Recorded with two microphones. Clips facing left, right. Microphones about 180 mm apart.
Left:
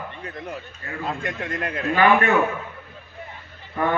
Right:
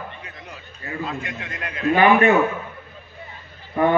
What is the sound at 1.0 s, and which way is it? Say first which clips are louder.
Speech: left 2 dB; 50° left (ahead or behind).